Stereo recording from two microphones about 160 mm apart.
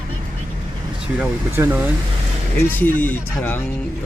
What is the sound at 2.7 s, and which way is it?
Speech, 10° left (ahead or behind).